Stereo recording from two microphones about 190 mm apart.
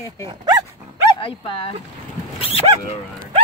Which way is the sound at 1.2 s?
30° left (ahead or behind).